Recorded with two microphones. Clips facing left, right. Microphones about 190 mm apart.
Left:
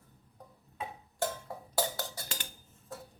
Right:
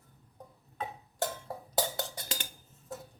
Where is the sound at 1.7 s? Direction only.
20° right (ahead or behind).